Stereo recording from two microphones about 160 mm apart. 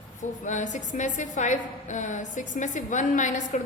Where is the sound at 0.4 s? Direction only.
50° left (ahead or behind).